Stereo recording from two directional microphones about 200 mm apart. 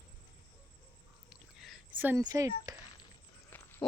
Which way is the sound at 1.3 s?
Centre (ahead or behind).